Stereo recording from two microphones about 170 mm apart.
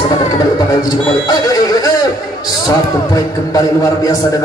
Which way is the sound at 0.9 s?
20° left (ahead or behind).